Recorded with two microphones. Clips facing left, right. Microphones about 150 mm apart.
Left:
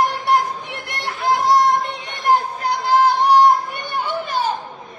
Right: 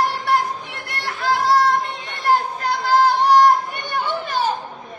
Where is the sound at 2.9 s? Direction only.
10° left (ahead or behind).